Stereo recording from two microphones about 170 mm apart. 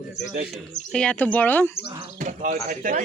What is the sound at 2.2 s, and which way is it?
Speech, 50° right (ahead or behind).